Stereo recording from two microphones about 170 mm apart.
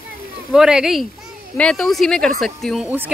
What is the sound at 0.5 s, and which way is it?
A woman's voice, 5° right (ahead or behind).